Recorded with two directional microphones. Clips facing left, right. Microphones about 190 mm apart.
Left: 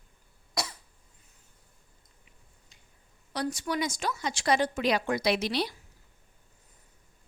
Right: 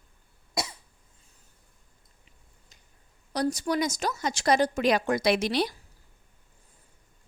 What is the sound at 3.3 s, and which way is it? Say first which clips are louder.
A woman's voice: right 4 dB; 40° right (ahead or behind).